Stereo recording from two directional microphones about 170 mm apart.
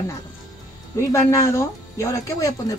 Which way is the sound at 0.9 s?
15° left (ahead or behind).